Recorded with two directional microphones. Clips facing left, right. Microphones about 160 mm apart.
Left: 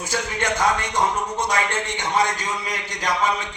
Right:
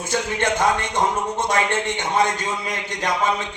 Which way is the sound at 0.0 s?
25° right (ahead or behind).